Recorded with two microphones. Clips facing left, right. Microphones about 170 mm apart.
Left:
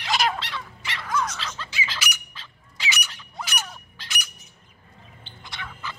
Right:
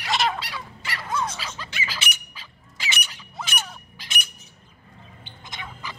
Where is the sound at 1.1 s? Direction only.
30° right (ahead or behind).